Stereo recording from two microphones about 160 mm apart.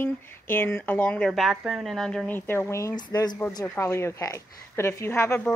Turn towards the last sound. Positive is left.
turn(degrees=15)  # may be behind; listen again after turning